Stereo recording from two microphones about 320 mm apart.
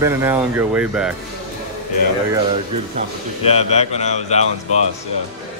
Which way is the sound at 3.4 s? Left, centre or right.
Centre.